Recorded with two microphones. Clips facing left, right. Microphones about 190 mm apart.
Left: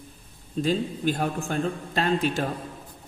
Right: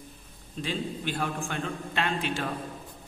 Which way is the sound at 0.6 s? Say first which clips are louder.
Left 7 dB; 40° left (ahead or behind).